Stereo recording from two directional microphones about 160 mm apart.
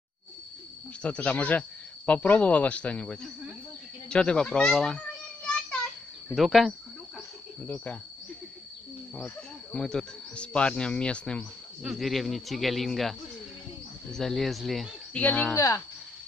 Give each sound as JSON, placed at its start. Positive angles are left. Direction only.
{"t": 1.0, "sound": "speech", "side_deg": 10}
{"t": 6.3, "sound": "speech", "side_deg": 0}
{"t": 7.6, "sound": "speech", "side_deg": 10}
{"t": 9.1, "sound": "speech", "side_deg": 5}
{"t": 14.1, "sound": "speech", "side_deg": 0}
{"t": 15.5, "sound": "speech", "side_deg": 20}